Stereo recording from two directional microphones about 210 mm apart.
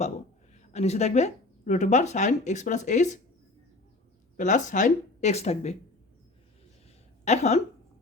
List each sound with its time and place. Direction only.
0.5 s speech: 30° left (ahead or behind)
4.4 s speech: 35° left (ahead or behind)
7.3 s speech: 30° left (ahead or behind)